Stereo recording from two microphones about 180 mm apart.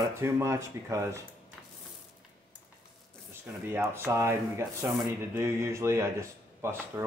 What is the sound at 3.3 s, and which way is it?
Speech, 15° right (ahead or behind).